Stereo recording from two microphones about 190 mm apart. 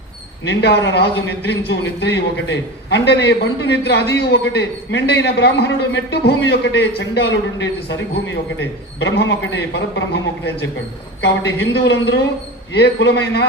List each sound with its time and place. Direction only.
0.6 s a man's voice: 70° left (ahead or behind)
11.2 s a man's voice: 65° left (ahead or behind)